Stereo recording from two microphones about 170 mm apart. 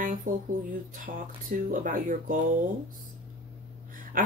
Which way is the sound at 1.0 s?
55° right (ahead or behind).